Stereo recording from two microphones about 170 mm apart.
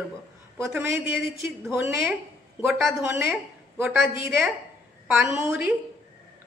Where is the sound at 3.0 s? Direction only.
15° right (ahead or behind).